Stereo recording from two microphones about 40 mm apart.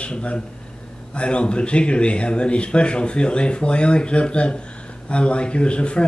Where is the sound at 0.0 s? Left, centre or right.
Left.